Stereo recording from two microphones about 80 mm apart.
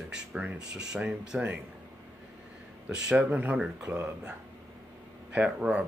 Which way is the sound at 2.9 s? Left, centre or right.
Centre.